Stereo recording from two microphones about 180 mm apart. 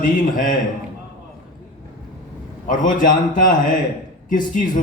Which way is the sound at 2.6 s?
45° left (ahead or behind).